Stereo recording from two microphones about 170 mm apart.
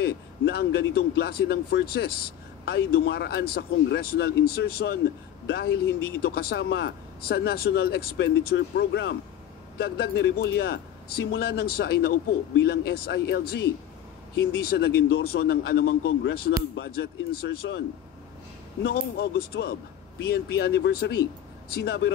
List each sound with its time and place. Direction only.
0.0 s a man's voice: 75° left (ahead or behind)
2.6 s a man's voice: 80° left
9.8 s a man's voice: 70° left (ahead or behind)